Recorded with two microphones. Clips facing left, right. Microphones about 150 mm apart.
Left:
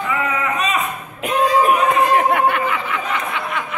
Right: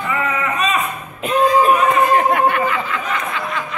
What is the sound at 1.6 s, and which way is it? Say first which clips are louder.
Chatter: right 1 dB; 10° left (ahead or behind).